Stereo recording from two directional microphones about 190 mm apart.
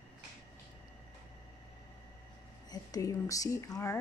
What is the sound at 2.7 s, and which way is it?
Speech, 20° left (ahead or behind).